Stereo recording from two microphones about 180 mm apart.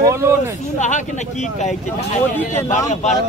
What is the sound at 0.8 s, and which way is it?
Speech, 40° left (ahead or behind).